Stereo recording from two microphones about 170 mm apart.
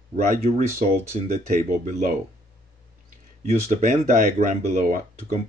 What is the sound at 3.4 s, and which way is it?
Speech, 45° right (ahead or behind).